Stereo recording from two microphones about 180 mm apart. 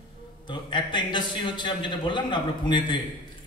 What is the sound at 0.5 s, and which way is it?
A man's voice, 25° left (ahead or behind).